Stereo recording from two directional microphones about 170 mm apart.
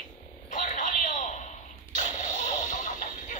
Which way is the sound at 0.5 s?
50° left (ahead or behind).